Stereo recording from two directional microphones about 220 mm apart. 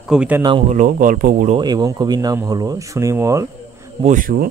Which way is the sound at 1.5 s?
20° right (ahead or behind).